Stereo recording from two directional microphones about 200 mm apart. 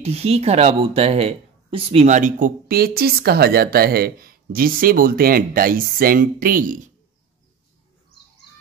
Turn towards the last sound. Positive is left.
turn(degrees=-40)  # may be behind; listen again after turning